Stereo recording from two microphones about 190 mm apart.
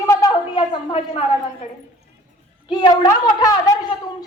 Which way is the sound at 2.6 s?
25° left (ahead or behind).